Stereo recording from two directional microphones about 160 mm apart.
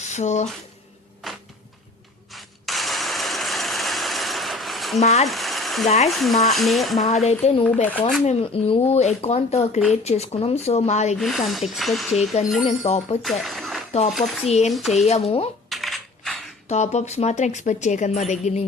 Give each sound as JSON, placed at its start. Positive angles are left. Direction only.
{"t": 0.0, "sound": "speech", "side_deg": 45}
{"t": 1.2, "sound": "a sound", "side_deg": 0}
{"t": 2.3, "sound": "engine", "side_deg": 0}
{"t": 4.9, "sound": "speech", "side_deg": 40}
{"t": 5.3, "sound": "a sound", "side_deg": 0}
{"t": 6.1, "sound": "speech", "side_deg": 0}
{"t": 7.3, "sound": "a woman's voice", "side_deg": 40}
{"t": 11.2, "sound": "speech", "side_deg": 0}
{"t": 12.6, "sound": "speech", "side_deg": 40}
{"t": 13.2, "sound": "a sound", "side_deg": 0}
{"t": 14.1, "sound": "speech", "side_deg": 0}
{"t": 15.0, "sound": "speech", "side_deg": 40}
{"t": 15.7, "sound": "coin", "side_deg": 0}
{"t": 16.6, "sound": "a woman's voice", "side_deg": 45}